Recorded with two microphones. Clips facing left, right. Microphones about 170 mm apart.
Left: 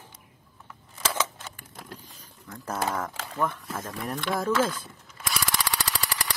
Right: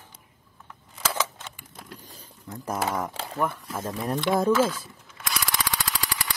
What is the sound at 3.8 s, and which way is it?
Speech, 30° right (ahead or behind).